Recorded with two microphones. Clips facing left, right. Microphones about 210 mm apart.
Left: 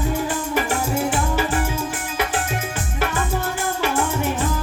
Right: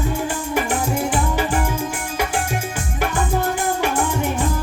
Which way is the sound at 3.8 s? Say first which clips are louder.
Right 1 dB; 15° right (ahead or behind).